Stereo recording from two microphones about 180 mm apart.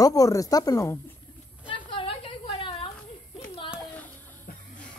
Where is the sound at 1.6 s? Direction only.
25° left (ahead or behind).